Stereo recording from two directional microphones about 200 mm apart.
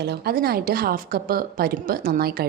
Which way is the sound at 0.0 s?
55° right (ahead or behind).